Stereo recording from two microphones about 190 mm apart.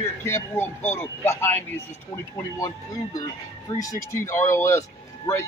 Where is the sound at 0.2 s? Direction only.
15° left (ahead or behind).